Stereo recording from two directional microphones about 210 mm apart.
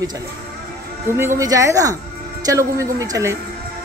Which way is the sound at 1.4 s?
15° right (ahead or behind).